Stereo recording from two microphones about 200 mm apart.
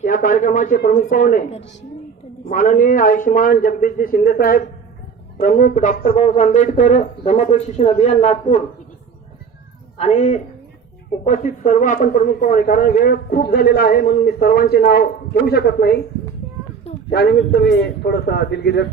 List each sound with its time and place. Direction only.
0.0 s a man's voice: 40° left (ahead or behind)
10.0 s a man's voice: 30° left (ahead or behind); by 16.0 s 50° left (ahead or behind)
17.1 s a man's voice: 55° left (ahead or behind)